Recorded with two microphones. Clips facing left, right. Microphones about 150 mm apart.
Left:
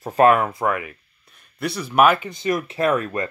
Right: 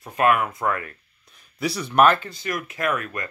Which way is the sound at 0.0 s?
35° left (ahead or behind).